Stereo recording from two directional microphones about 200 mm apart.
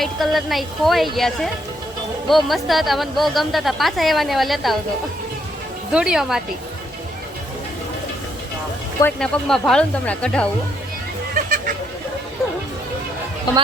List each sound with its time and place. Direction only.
0.0 s a woman's voice: centre (ahead or behind)
5.9 s a woman's voice: 5° right (ahead or behind)
9.0 s a woman's voice: 5° left (ahead or behind)
11.4 s a sound: 45° right (ahead or behind)